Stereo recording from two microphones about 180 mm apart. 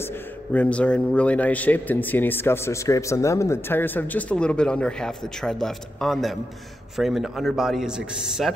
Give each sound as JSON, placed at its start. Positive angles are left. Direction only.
{"t": 0.0, "sound": "a man's voice", "side_deg": 10}